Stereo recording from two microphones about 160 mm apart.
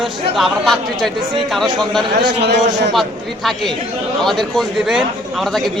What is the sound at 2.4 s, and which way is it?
Speech, 90° right.